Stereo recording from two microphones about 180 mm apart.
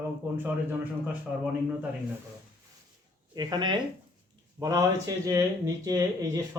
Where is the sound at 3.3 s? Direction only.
25° right (ahead or behind).